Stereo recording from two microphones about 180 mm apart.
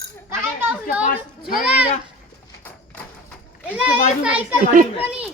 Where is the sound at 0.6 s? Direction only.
10° right (ahead or behind).